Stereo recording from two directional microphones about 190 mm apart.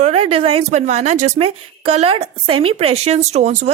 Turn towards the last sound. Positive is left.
turn(degrees=-35)  # may be behind; listen again after turning